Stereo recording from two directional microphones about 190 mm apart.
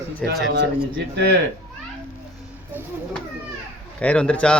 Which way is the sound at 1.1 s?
60° right (ahead or behind).